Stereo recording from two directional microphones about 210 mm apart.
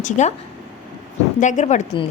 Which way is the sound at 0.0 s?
35° left (ahead or behind).